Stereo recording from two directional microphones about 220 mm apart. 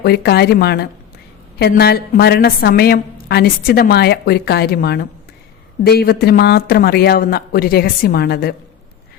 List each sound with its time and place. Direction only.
0.0 s a woman's voice: 45° left (ahead or behind)